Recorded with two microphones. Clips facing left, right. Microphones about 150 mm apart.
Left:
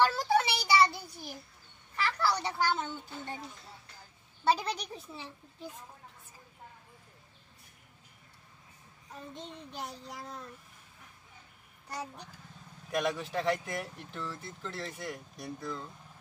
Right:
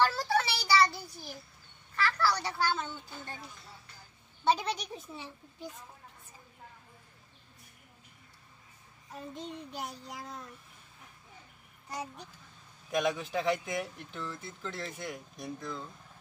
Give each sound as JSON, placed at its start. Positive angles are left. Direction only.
{"t": 0.0, "sound": "a sound", "side_deg": 20}
{"t": 2.0, "sound": "a child's voice", "side_deg": 20}
{"t": 4.5, "sound": "speech", "side_deg": 0}
{"t": 9.3, "sound": "speech", "side_deg": -5}
{"t": 12.9, "sound": "speech", "side_deg": 0}